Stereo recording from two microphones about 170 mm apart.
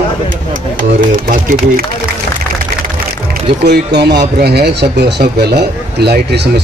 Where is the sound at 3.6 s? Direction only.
80° right.